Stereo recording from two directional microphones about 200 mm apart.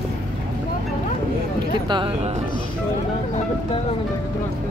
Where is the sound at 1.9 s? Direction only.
25° right (ahead or behind).